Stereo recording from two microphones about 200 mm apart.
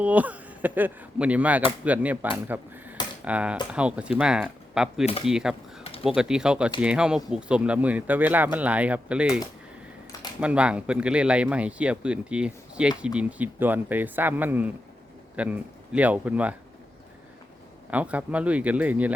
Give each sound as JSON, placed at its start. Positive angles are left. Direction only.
{"t": 0.0, "sound": "speech", "side_deg": -5}
{"t": 5.8, "sound": "pigeon", "side_deg": 30}
{"t": 6.1, "sound": "speech", "side_deg": -5}
{"t": 10.4, "sound": "speech", "side_deg": -5}
{"t": 17.9, "sound": "speech", "side_deg": -5}